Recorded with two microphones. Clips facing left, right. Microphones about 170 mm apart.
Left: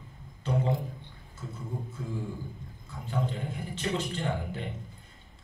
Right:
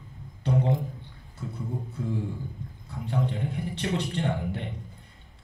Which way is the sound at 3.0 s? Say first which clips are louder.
Right 3 dB; 65° right (ahead or behind).